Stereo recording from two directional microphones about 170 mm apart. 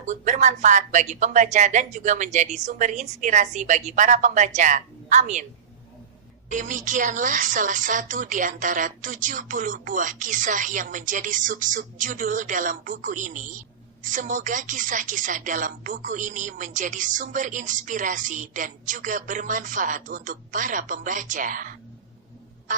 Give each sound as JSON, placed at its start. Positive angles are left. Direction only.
{"t": 0.0, "sound": "a woman's voice", "side_deg": -45}
{"t": 6.5, "sound": "a woman's voice", "side_deg": -50}